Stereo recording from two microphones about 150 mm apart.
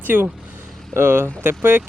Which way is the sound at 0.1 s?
15° right (ahead or behind).